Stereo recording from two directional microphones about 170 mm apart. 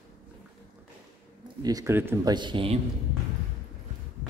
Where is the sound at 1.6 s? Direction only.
20° right (ahead or behind).